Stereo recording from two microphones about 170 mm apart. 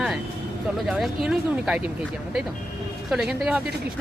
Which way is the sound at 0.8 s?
Centre (ahead or behind).